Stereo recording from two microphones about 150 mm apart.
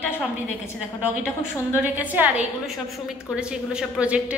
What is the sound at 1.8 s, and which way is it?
A woman's voice, 10° right (ahead or behind).